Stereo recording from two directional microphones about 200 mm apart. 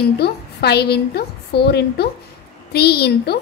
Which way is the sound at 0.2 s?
55° left (ahead or behind).